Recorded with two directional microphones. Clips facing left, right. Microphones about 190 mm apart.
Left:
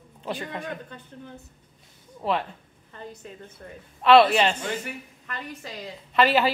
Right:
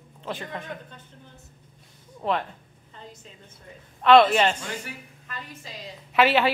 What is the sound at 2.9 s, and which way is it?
Speech, 60° left (ahead or behind).